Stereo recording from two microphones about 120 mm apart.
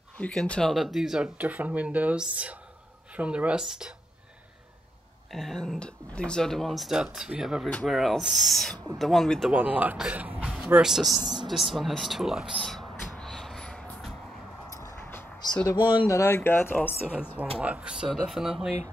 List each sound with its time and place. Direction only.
0.2 s speech: 5° left (ahead or behind)
5.3 s speech: centre (ahead or behind)
9.5 s speech: 15° right (ahead or behind)
11.4 s a sound: centre (ahead or behind)
14.7 s a sound: 25° left (ahead or behind)
16.1 s speech: 25° left (ahead or behind)
17.4 s speech: 10° right (ahead or behind)